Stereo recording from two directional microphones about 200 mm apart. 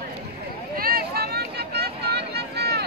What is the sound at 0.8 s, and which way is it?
Vehicle, 50° right (ahead or behind).